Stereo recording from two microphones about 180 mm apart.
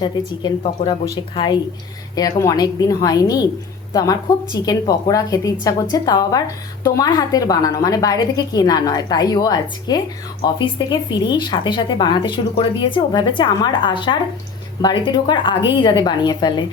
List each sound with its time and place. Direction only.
0.0 s speech: 25° left (ahead or behind)